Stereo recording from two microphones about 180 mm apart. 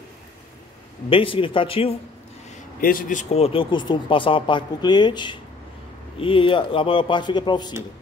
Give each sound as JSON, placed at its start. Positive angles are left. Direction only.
{"t": 1.1, "sound": "a man's voice", "side_deg": 30}
{"t": 2.8, "sound": "a man's voice", "side_deg": 50}